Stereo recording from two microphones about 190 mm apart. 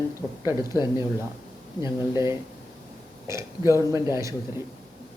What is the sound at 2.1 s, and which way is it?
Speech, 15° right (ahead or behind).